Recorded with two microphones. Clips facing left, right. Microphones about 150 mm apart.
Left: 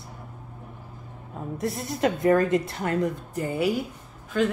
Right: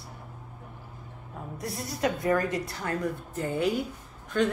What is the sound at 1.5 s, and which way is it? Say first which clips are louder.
A woman's voice: left 6 dB; 25° left (ahead or behind).